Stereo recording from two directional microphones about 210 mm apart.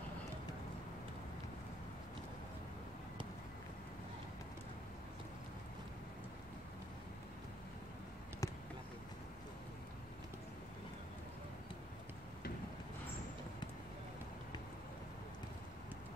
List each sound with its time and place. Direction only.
8.4 s basketball bounce: 15° left (ahead or behind)